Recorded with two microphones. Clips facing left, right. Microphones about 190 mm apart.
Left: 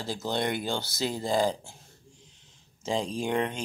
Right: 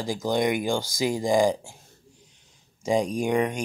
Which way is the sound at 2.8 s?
15° right (ahead or behind).